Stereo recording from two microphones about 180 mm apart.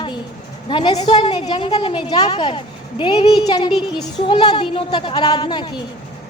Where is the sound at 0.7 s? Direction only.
25° left (ahead or behind).